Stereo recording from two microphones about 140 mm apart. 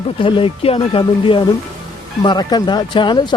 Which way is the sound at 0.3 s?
40° left (ahead or behind).